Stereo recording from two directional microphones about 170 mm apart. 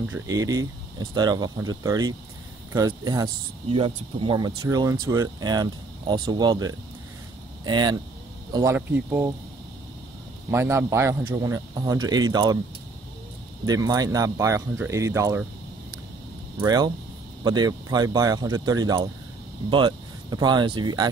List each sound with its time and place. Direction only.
0.1 s speech: 20° right (ahead or behind)
8.7 s speech: 10° right (ahead or behind)
10.5 s speech: 15° right (ahead or behind)
13.7 s speech: 20° right (ahead or behind)
16.5 s speech: 25° right (ahead or behind)